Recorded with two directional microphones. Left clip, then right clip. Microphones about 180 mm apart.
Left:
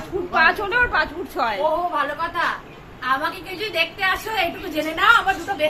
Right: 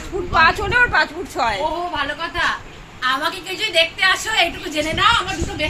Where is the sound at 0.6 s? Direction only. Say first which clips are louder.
Right 4 dB; centre (ahead or behind).